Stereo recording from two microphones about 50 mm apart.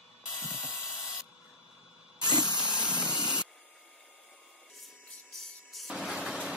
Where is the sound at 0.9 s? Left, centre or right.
Left.